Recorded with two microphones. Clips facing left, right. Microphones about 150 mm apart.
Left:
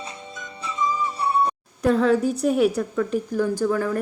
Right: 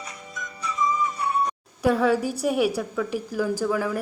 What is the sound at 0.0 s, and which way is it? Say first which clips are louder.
Music: left 2 dB; 25° left (ahead or behind).